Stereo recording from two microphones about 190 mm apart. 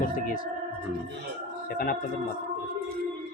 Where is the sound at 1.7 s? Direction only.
50° left (ahead or behind).